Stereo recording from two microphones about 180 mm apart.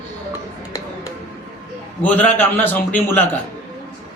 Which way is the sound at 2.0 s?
10° left (ahead or behind).